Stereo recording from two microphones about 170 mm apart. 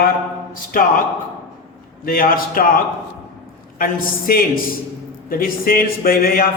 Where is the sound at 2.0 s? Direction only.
60° left (ahead or behind).